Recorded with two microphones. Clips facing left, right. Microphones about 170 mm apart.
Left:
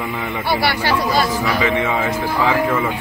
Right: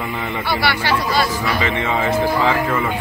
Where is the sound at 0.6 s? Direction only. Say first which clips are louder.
Even; 40° left (ahead or behind).